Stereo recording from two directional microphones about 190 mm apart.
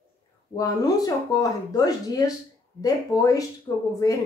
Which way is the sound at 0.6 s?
20° left (ahead or behind).